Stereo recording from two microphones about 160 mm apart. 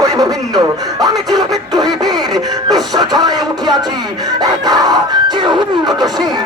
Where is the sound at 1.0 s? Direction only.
25° right (ahead or behind).